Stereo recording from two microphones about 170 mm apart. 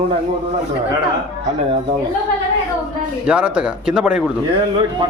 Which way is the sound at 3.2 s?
5° right (ahead or behind).